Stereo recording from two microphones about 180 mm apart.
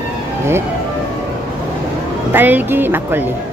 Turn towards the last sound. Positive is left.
turn(degrees=-10)  # may be behind; listen again after turning